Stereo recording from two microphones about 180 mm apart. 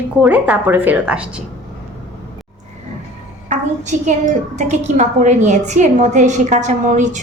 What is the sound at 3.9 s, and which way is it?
A woman's voice, 45° right (ahead or behind).